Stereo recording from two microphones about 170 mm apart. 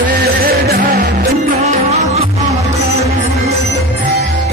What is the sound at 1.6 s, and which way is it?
Music, 40° right (ahead or behind).